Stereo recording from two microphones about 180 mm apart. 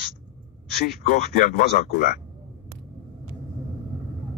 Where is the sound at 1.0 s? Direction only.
50° left (ahead or behind).